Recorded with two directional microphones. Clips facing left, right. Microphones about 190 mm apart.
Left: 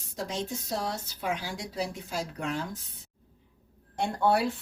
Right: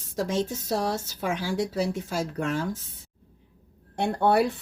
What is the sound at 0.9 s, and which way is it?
Speech, 45° right (ahead or behind).